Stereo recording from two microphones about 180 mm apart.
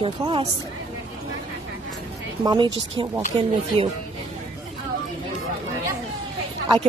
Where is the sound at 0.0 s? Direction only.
30° right (ahead or behind).